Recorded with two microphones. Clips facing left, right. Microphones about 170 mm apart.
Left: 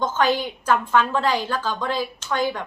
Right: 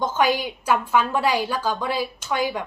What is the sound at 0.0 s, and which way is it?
A woman's voice, 10° right (ahead or behind).